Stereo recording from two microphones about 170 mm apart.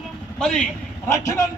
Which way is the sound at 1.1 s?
20° left (ahead or behind).